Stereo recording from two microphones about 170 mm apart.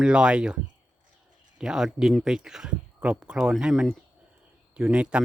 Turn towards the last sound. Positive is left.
turn(degrees=-5)  # may be behind; listen again after turning